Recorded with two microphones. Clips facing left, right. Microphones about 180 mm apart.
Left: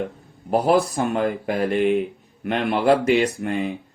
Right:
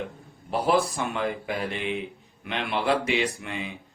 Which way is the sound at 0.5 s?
45° left (ahead or behind).